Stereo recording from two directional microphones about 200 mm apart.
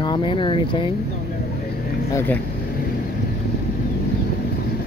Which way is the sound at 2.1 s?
10° left (ahead or behind).